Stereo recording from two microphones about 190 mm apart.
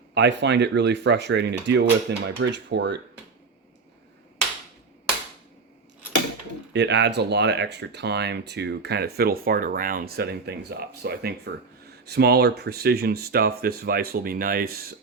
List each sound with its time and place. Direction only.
0.1 s speech: 65° right (ahead or behind)
6.7 s speech: 65° right (ahead or behind)